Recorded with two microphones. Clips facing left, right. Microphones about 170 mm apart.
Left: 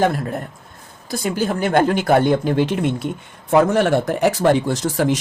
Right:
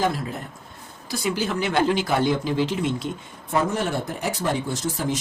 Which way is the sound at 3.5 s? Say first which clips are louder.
Left 9 dB; 85° left.